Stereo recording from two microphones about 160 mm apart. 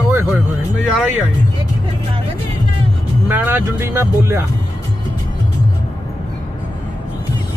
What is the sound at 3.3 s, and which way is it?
Speech, 10° right (ahead or behind).